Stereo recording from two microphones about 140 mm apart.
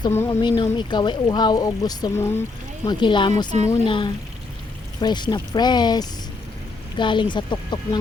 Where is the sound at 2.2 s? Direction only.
15° left (ahead or behind).